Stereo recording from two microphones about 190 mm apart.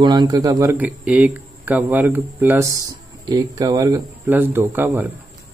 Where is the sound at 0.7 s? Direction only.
5° right (ahead or behind).